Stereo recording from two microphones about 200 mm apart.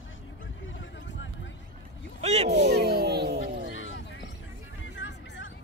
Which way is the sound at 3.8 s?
65° left (ahead or behind).